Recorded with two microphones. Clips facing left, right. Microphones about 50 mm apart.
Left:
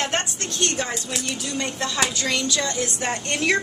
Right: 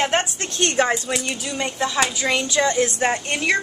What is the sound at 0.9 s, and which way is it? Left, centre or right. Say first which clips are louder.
A woman's voice: right 5 dB; centre.